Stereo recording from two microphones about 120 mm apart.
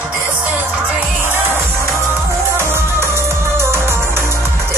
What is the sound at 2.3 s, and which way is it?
Music, 20° right (ahead or behind).